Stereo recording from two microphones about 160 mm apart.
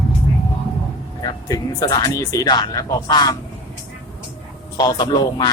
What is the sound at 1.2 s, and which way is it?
Speech, 25° left (ahead or behind).